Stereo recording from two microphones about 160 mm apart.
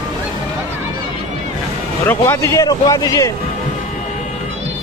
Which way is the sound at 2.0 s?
15° left (ahead or behind).